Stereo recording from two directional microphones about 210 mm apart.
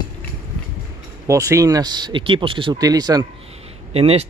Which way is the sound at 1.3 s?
15° right (ahead or behind).